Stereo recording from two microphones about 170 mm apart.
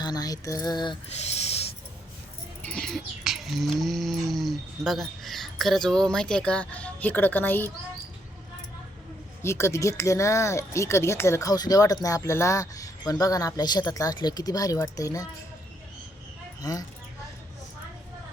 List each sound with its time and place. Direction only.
0.0 s mantra: 25° left (ahead or behind)
1.1 s a sound: 40° left (ahead or behind)
2.6 s livestock: 5° left (ahead or behind)
9.4 s speech: 15° left (ahead or behind)
16.6 s speech: 20° left (ahead or behind)